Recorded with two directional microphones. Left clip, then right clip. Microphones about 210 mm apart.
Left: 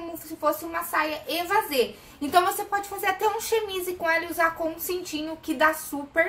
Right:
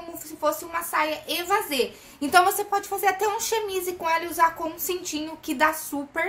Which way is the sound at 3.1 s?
40° right (ahead or behind).